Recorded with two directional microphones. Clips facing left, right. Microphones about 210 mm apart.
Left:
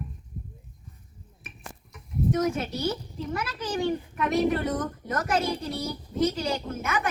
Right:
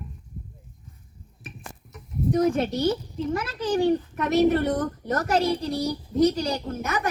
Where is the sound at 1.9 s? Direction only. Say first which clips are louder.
Right 2 dB; 35° right (ahead or behind).